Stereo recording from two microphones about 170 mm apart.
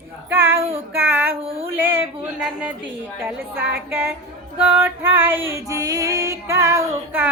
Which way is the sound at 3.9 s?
10° right (ahead or behind).